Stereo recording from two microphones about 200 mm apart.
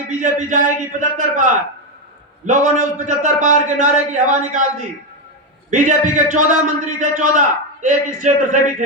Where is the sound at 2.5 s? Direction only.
40° right (ahead or behind).